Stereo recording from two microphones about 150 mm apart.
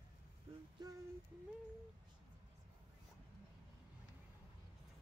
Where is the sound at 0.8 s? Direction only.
25° right (ahead or behind).